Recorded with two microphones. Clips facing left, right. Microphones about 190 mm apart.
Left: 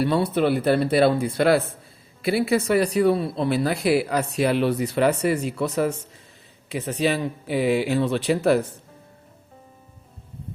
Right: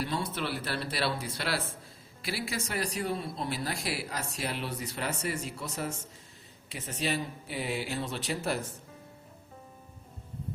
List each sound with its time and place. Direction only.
0.0 s speech: 65° left (ahead or behind)